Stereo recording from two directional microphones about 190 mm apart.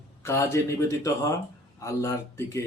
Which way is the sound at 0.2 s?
15° left (ahead or behind).